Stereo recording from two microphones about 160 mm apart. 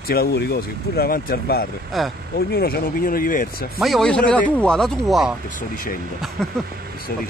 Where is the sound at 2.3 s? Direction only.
80° left; by 3.6 s 60° left (ahead or behind).